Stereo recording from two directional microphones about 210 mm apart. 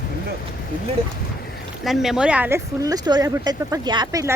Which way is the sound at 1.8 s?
Centre (ahead or behind).